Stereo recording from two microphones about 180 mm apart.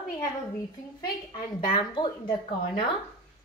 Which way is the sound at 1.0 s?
25° left (ahead or behind).